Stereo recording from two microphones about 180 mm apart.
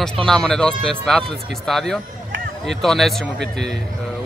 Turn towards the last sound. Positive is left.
turn(degrees=0)  # may be behind; listen again after turning